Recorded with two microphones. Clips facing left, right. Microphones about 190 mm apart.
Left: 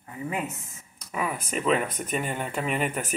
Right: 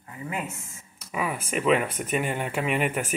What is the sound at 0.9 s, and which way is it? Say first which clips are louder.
Speech: right 1 dB; 5° right (ahead or behind).